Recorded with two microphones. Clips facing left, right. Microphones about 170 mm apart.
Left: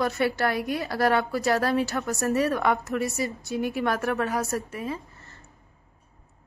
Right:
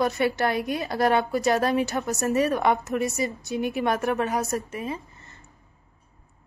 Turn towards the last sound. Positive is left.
turn(degrees=-20)  # may be behind; listen again after turning